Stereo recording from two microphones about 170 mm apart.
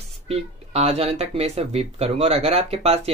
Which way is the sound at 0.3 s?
35° right (ahead or behind).